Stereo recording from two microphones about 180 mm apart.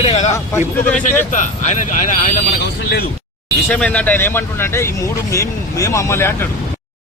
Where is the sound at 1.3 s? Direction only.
45° left (ahead or behind).